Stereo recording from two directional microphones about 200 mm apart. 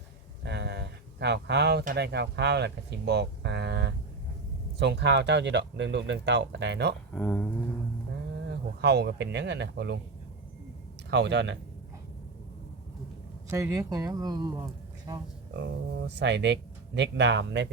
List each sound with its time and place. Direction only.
0.4 s a sound: 60° right (ahead or behind)
1.8 s speech: 50° right (ahead or behind)
7.1 s speech: 10° left (ahead or behind)
8.8 s speech: 55° right (ahead or behind)
11.1 s speech: 60° right (ahead or behind)
13.5 s speech: 15° right (ahead or behind)
15.5 s speech: 60° right (ahead or behind)